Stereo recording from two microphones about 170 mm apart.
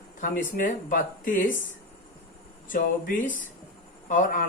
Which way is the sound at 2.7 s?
50° left (ahead or behind).